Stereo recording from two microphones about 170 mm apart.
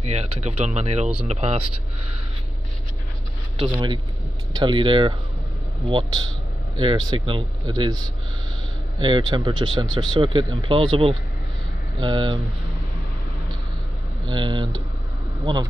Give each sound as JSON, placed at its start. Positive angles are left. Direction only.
{"t": 0.0, "sound": "speech", "side_deg": -40}
{"t": 3.5, "sound": "speech", "side_deg": -30}
{"t": 14.2, "sound": "speech", "side_deg": -25}